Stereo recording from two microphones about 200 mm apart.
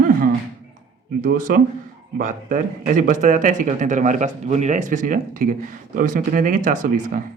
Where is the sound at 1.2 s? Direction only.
45° right (ahead or behind).